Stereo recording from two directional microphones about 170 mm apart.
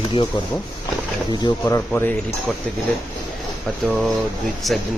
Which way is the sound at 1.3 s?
20° left (ahead or behind).